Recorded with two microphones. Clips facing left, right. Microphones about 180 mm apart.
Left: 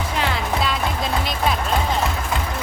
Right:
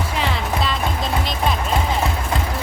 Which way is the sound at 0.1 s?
Centre (ahead or behind).